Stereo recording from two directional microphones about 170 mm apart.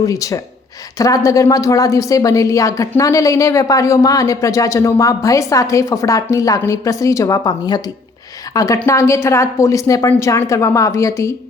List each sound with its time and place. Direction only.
0.0 s a woman's voice: 20° left (ahead or behind)